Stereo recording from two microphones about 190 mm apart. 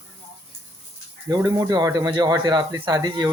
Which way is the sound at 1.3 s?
20° right (ahead or behind).